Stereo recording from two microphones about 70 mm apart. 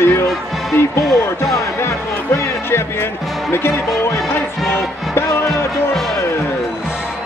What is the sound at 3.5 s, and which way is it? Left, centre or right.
Speech, left.